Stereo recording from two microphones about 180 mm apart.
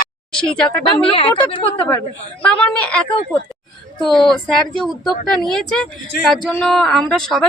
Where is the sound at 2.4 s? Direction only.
5° left (ahead or behind).